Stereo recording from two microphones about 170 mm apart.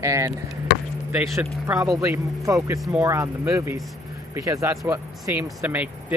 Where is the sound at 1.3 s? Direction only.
20° right (ahead or behind).